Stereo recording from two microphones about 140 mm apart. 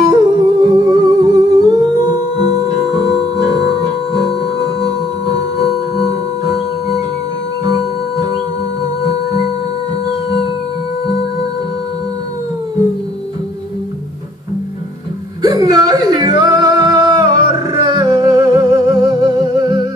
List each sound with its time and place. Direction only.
0.0 s music: 25° right (ahead or behind)
2.9 s music: 25° right (ahead or behind)
15.4 s music: 30° right (ahead or behind)